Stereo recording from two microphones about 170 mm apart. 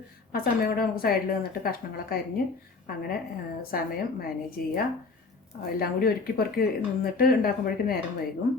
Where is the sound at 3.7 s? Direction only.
60° left (ahead or behind).